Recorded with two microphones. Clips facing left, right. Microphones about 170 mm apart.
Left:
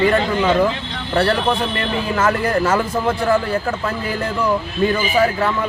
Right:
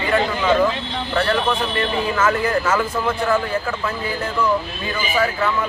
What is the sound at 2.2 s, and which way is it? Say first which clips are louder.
Speech: left 3 dB; 35° left (ahead or behind).